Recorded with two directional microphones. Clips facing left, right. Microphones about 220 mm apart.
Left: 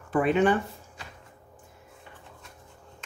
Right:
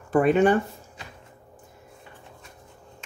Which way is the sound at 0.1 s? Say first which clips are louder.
Right 4 dB; 45° right (ahead or behind).